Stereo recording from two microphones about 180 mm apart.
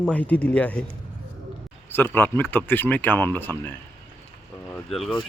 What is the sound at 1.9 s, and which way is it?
Speech, 10° left (ahead or behind).